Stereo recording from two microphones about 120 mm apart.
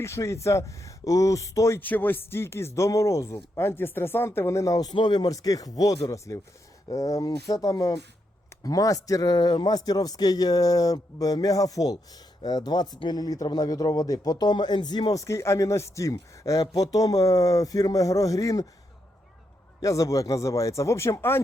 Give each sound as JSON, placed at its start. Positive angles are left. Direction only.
{"t": 0.0, "sound": "a man's voice", "side_deg": 25}
{"t": 19.8, "sound": "speech", "side_deg": 25}